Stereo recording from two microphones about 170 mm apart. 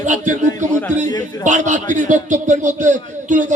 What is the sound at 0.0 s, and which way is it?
A man's voice, 45° right (ahead or behind).